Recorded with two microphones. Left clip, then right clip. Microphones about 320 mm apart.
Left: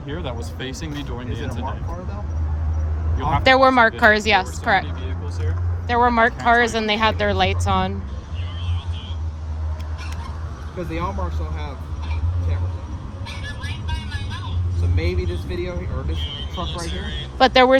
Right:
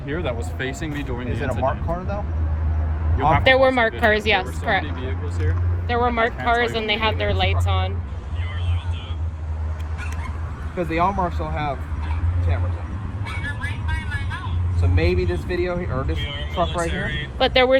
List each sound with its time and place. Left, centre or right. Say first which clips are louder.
0.1 s speech: right 4 dB; centre
3.3 s speech: left 3 dB; centre
5.9 s speech: left 4 dB; centre
10.8 s speech: right 7 dB; centre
13.2 s vehicle: right 4 dB; centre
14.8 s speech: right 5 dB; centre
17.3 s speech: left 3 dB; centre